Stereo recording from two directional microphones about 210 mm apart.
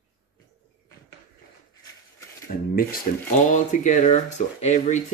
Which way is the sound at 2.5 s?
40° left (ahead or behind).